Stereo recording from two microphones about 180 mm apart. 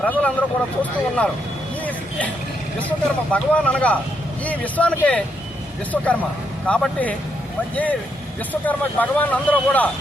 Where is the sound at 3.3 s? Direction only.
5° left (ahead or behind).